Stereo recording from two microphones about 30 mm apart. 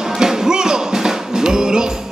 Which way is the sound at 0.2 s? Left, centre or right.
Centre.